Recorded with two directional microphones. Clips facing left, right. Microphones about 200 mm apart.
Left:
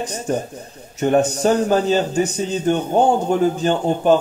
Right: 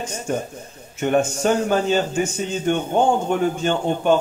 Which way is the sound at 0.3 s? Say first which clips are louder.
Left 2 dB; 35° left (ahead or behind).